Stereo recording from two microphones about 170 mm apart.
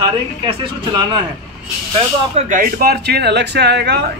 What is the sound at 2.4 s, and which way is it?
Speech, 50° right (ahead or behind).